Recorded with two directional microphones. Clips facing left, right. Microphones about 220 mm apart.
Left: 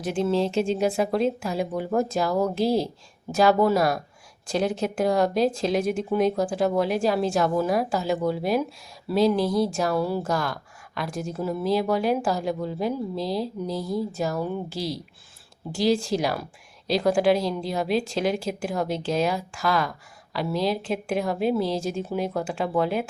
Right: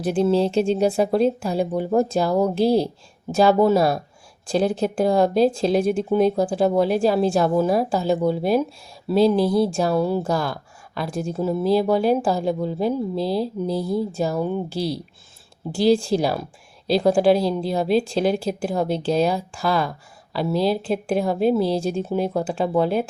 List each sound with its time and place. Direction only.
0.0 s speech: 35° right (ahead or behind)
2.6 s speech: centre (ahead or behind)
3.3 s speech: 25° right (ahead or behind)
13.3 s speech: centre (ahead or behind)
13.7 s speech: 25° right (ahead or behind)
15.9 s speech: 30° right (ahead or behind)